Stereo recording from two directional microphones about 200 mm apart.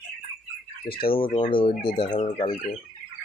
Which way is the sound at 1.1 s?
25° left (ahead or behind).